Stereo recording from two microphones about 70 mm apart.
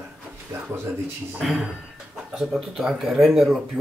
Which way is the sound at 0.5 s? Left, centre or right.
Right.